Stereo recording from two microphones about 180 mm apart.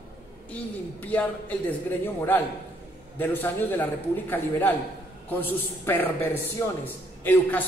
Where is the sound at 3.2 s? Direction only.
10° left (ahead or behind).